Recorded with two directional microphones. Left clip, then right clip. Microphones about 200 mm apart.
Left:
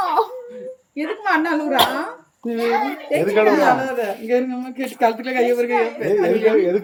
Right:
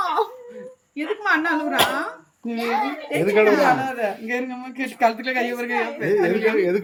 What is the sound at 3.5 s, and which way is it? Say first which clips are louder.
A woman's voice: left 2 dB; 30° right (ahead or behind).